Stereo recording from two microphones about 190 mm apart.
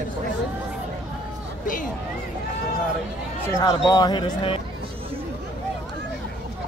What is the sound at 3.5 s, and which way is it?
Speech, 20° left (ahead or behind).